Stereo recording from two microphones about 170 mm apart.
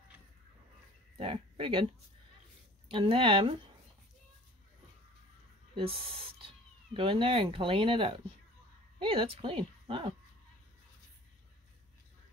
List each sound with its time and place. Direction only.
1.1 s speech: 30° right (ahead or behind)
2.9 s speech: 30° right (ahead or behind)
5.8 s speech: 30° right (ahead or behind)